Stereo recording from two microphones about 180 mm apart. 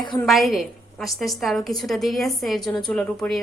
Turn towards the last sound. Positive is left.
turn(degrees=5)  # may be behind; listen again after turning